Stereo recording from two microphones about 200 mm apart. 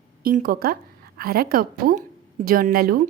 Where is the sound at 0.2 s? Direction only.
45° right (ahead or behind).